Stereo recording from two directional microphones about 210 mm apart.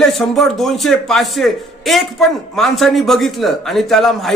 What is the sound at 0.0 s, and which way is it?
A man's voice, centre (ahead or behind).